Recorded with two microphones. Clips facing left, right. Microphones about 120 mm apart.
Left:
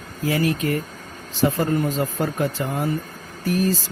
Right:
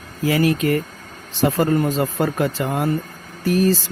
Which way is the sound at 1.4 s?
90° right.